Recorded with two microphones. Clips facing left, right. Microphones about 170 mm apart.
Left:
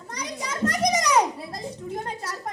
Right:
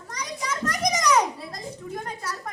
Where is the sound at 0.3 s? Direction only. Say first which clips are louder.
Left 3 dB; 30° left (ahead or behind).